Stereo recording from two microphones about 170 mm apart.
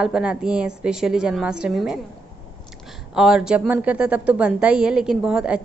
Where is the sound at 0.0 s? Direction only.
5° right (ahead or behind).